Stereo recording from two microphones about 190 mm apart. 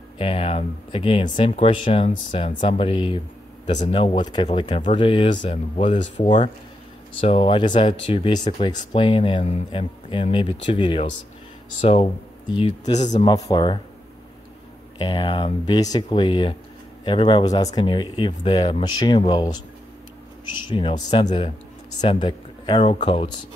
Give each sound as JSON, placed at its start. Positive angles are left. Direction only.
{"t": 0.2, "sound": "speech", "side_deg": 30}
{"t": 6.2, "sound": "speech", "side_deg": 25}
{"t": 13.3, "sound": "speech", "side_deg": 20}
{"t": 15.0, "sound": "speech", "side_deg": 25}
{"t": 20.6, "sound": "speech", "side_deg": 25}